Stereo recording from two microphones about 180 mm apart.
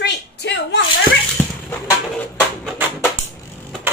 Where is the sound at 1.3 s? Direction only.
10° left (ahead or behind).